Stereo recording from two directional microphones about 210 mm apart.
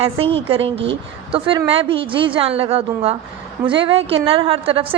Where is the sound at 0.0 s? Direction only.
25° right (ahead or behind).